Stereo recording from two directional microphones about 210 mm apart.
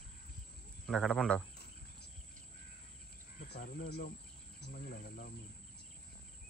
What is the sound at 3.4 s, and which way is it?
Speech, 50° left (ahead or behind).